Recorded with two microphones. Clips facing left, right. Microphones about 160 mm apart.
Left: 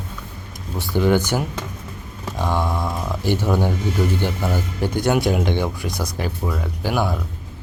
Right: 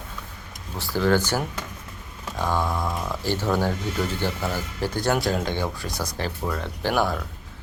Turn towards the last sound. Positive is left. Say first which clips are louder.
# left 1 dB
turn(degrees=10)  # may be behind; listen again after turning